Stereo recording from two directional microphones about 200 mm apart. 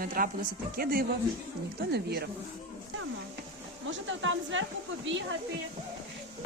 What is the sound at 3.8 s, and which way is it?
Speech, 70° right (ahead or behind).